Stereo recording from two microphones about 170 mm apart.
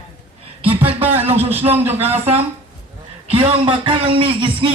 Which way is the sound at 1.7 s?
10° right (ahead or behind).